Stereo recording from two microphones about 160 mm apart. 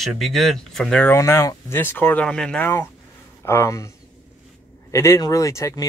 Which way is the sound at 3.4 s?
15° left (ahead or behind).